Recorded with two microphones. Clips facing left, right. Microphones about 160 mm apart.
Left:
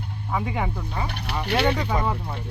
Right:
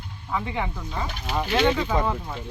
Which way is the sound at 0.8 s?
65° left (ahead or behind).